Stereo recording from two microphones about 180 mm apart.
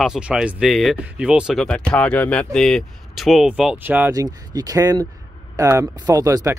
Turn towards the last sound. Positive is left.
turn(degrees=-20)  # may be behind; listen again after turning